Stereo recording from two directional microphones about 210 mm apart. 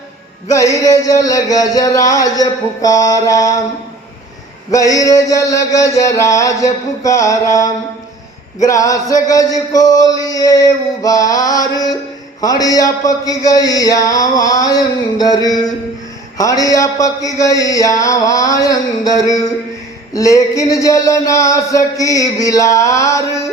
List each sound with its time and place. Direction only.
0.5 s music: 15° left (ahead or behind)
4.7 s music: 15° left (ahead or behind)